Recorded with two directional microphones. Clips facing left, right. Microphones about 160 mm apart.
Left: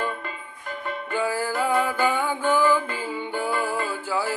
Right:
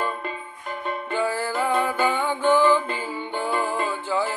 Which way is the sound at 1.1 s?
10° left (ahead or behind).